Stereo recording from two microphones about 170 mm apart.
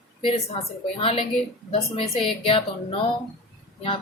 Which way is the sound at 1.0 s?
35° left (ahead or behind).